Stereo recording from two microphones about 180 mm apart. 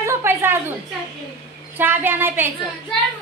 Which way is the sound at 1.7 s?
10° right (ahead or behind).